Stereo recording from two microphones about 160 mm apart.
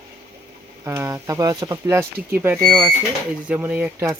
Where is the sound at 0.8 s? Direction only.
15° right (ahead or behind).